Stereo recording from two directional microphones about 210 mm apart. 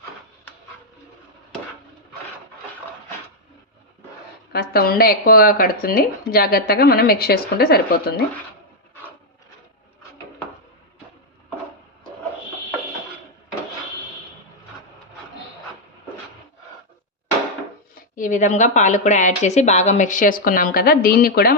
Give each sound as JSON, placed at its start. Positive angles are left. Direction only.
{"t": 4.5, "sound": "speech", "side_deg": 45}
{"t": 18.1, "sound": "speech", "side_deg": 40}